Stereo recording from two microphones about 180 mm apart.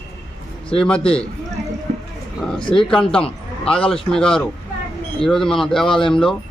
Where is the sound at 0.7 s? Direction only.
5° left (ahead or behind).